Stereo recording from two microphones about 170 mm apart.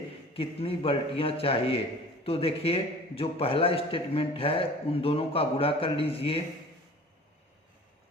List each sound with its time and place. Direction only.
0.3 s a man's voice: 35° left (ahead or behind)